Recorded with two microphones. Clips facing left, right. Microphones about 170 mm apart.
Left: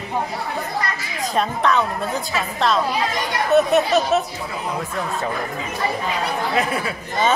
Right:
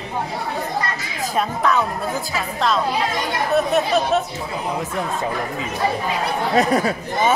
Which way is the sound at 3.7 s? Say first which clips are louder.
Left 1 dB; 5° left (ahead or behind).